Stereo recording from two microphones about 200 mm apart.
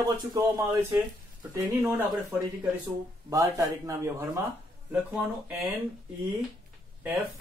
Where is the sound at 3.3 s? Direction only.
15° right (ahead or behind).